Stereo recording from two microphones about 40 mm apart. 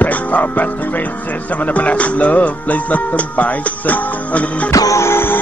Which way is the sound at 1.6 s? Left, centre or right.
Left.